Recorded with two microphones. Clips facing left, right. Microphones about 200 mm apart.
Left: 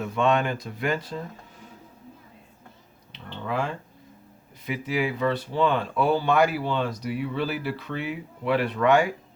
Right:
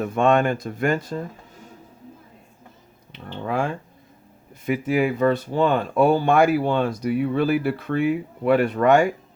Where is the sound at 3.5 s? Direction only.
50° right (ahead or behind).